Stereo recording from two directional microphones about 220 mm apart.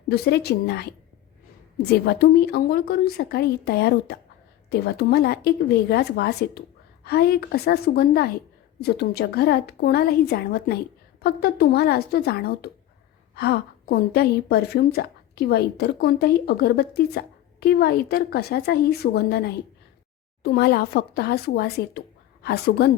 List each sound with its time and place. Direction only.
0.1 s a woman's voice: 50° left (ahead or behind)